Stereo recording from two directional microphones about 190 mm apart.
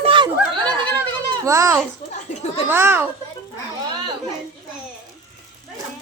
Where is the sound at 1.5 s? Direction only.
15° right (ahead or behind).